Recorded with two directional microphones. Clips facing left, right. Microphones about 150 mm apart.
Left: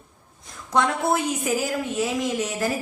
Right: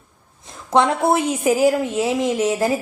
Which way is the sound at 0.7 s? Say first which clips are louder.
Right 5 dB; 25° right (ahead or behind).